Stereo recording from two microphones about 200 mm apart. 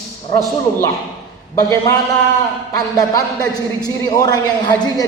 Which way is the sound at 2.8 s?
15° left (ahead or behind).